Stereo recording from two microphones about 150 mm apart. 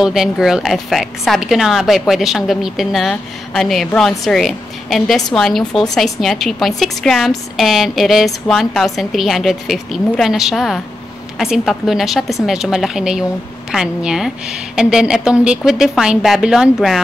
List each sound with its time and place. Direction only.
0.0 s speech: 5° right (ahead or behind)